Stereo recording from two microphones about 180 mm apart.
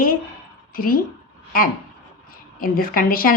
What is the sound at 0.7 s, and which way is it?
Speech, 55° left (ahead or behind).